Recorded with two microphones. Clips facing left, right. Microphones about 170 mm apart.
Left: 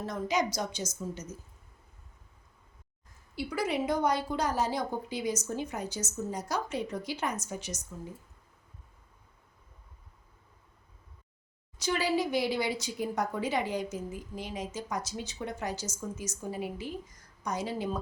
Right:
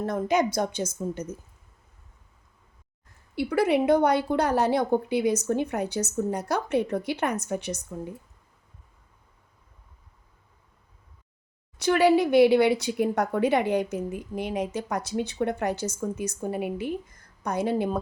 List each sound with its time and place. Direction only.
0.0 s a woman's voice: 55° right (ahead or behind)
3.3 s a woman's voice: 60° right (ahead or behind)
11.8 s a woman's voice: 65° right (ahead or behind)